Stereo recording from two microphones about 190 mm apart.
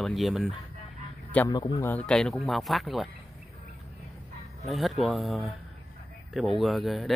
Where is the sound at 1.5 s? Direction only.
20° left (ahead or behind).